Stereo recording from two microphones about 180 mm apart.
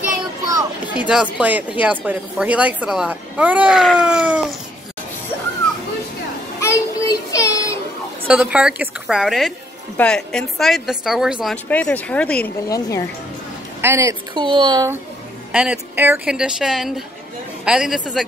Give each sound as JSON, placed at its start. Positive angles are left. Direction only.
{"t": 0.5, "sound": "a sound", "side_deg": -20}
{"t": 0.9, "sound": "speech", "side_deg": -5}
{"t": 6.6, "sound": "child singing", "side_deg": 20}
{"t": 8.3, "sound": "a woman's voice", "side_deg": -5}
{"t": 11.5, "sound": "speech", "side_deg": 10}
{"t": 12.6, "sound": "speech", "side_deg": 20}
{"t": 13.7, "sound": "speech", "side_deg": -15}
{"t": 15.5, "sound": "a woman's voice", "side_deg": -5}